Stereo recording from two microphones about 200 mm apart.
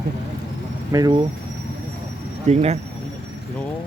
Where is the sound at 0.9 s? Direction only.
20° right (ahead or behind).